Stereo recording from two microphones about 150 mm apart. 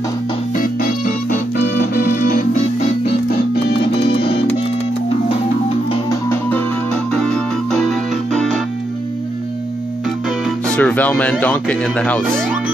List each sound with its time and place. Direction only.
0.6 s keyboard: 70° left (ahead or behind)
4.0 s music: 40° left (ahead or behind)
6.0 s music: 15° left (ahead or behind)
7.1 s music: 5° left (ahead or behind)
7.9 s keyboard: centre (ahead or behind)
10.7 s speech: 10° left (ahead or behind)